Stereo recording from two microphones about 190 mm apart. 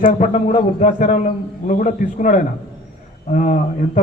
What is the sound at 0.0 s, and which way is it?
A man's voice, 40° left (ahead or behind).